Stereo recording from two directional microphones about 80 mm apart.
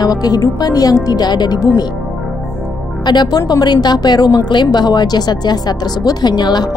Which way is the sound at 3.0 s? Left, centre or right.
Left.